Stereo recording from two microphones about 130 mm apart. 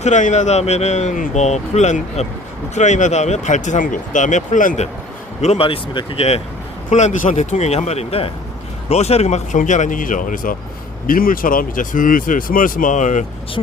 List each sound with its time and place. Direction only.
0.0 s speech: 70° left (ahead or behind)
5.4 s speech: 50° left (ahead or behind)
6.9 s speech: 70° left (ahead or behind)